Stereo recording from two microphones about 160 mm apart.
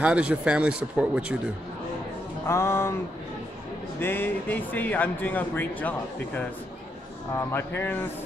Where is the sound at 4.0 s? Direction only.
15° left (ahead or behind).